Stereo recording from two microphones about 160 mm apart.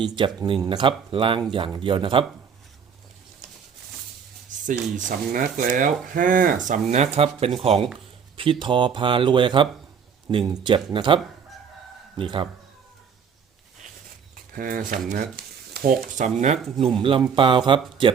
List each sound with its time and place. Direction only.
0.0 s speech: 30° right (ahead or behind)
4.6 s speech: 55° right (ahead or behind); by 12.5 s 30° right (ahead or behind)
14.5 s speech: 60° right (ahead or behind)
15.1 s speech: 75° right (ahead or behind); by 16.6 s 50° right (ahead or behind)
16.7 s speech: 30° right (ahead or behind)